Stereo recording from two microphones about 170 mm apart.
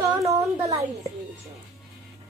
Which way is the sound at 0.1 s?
20° right (ahead or behind).